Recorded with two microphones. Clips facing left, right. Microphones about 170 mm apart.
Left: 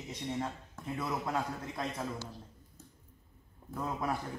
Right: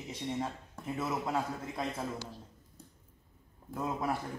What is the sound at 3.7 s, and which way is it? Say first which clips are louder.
Speech: right 1 dB; 5° right (ahead or behind).